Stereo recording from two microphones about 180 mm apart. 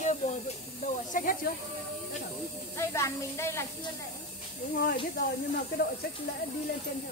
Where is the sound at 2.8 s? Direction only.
15° left (ahead or behind).